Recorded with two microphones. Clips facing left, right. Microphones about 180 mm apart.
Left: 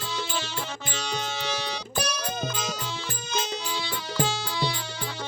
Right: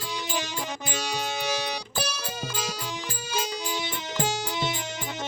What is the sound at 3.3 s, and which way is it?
Music, 10° right (ahead or behind).